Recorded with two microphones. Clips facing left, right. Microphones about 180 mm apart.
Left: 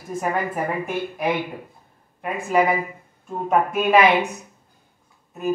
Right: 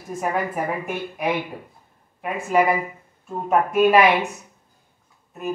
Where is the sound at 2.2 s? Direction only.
Centre (ahead or behind).